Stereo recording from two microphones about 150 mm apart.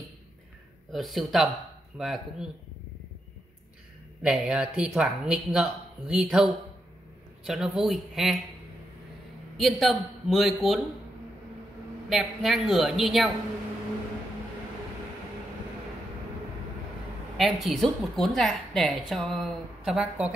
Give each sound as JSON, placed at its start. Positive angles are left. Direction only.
{"t": 0.9, "sound": "a woman's voice", "side_deg": 0}
{"t": 4.2, "sound": "a woman's voice", "side_deg": -5}
{"t": 9.6, "sound": "a woman's voice", "side_deg": 0}
{"t": 12.1, "sound": "a woman's voice", "side_deg": 0}
{"t": 17.4, "sound": "a woman's voice", "side_deg": 0}